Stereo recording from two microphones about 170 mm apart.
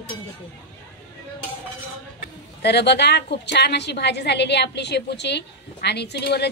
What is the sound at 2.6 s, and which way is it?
A woman's voice, 80° left.